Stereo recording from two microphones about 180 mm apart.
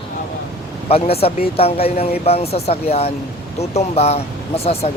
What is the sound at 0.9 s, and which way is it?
Speech, 35° left (ahead or behind).